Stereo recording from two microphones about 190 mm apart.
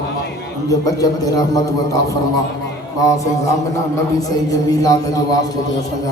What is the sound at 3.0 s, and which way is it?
Mantra, 15° left (ahead or behind).